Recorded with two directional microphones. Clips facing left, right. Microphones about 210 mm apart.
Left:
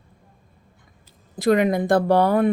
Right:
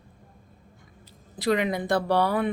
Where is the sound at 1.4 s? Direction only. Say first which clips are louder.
Left 6 dB; 50° left (ahead or behind).